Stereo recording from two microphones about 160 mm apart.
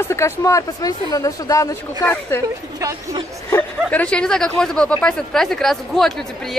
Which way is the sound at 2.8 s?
20° right (ahead or behind).